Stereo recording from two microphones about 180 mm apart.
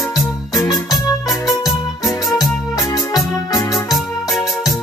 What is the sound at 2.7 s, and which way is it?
Organ, 20° left (ahead or behind).